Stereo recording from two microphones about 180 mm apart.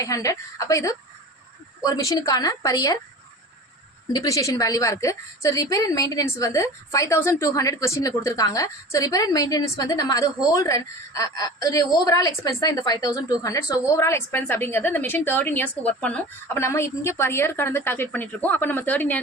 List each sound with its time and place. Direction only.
0.0 s a woman's voice: 20° left (ahead or behind)
4.1 s a woman's voice: 20° left (ahead or behind)